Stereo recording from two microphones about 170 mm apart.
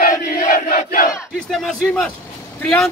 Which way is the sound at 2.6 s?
5° left (ahead or behind).